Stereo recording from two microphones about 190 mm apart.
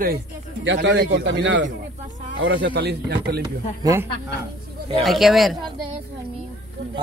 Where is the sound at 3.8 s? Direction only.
15° right (ahead or behind).